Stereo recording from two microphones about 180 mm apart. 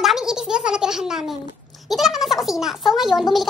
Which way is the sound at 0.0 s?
Centre (ahead or behind).